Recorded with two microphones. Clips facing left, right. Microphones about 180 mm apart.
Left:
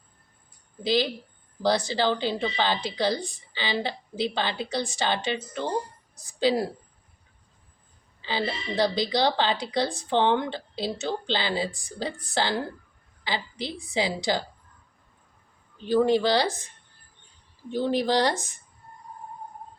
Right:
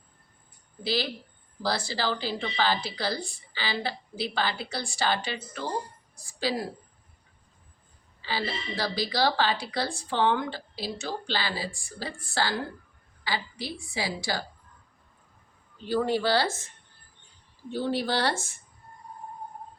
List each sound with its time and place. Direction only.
0.8 s a woman's voice: 20° left (ahead or behind)
8.2 s a woman's voice: 20° left (ahead or behind)
15.9 s speech: 20° left (ahead or behind)
17.7 s a woman's voice: 20° left (ahead or behind)